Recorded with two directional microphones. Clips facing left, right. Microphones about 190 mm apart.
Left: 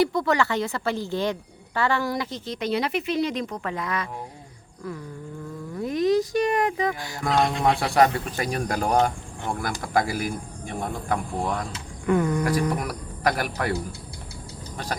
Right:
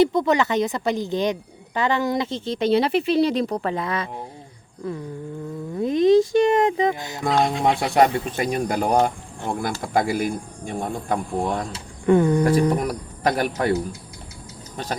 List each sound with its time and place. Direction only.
0.0 s speech: 20° right (ahead or behind)
7.3 s speech: centre (ahead or behind)
8.4 s speech: 20° right (ahead or behind)